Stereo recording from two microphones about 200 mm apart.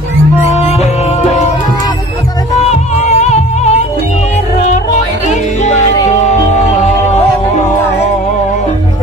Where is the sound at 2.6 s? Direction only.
35° left (ahead or behind).